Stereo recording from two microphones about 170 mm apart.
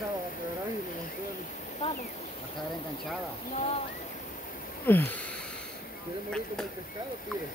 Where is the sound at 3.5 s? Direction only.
40° left (ahead or behind).